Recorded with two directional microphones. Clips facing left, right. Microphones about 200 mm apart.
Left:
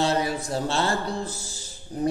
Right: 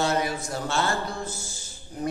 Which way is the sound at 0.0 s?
30° left (ahead or behind).